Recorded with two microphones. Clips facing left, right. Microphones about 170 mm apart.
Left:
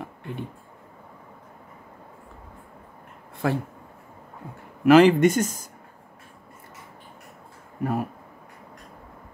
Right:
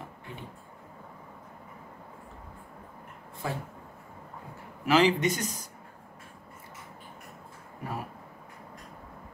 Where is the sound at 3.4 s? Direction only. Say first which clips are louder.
Left 9 dB; 70° left (ahead or behind).